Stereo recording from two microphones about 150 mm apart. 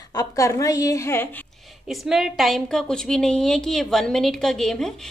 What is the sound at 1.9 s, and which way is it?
A woman's voice, centre (ahead or behind).